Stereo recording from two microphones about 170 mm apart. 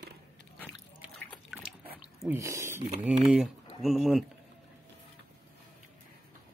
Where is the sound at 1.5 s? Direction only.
5° right (ahead or behind).